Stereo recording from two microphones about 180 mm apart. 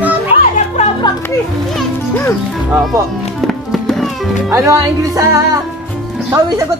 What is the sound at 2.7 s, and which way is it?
Speech, 15° right (ahead or behind).